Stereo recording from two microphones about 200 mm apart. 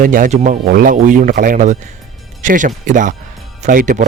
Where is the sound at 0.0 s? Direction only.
40° right (ahead or behind).